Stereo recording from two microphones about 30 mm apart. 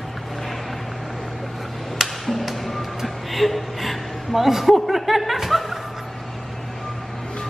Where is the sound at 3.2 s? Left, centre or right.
Centre.